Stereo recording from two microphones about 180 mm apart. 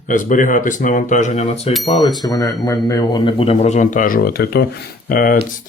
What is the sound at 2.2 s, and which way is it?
A man's voice, 20° left (ahead or behind).